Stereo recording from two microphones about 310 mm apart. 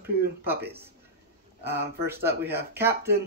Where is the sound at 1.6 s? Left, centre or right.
Right.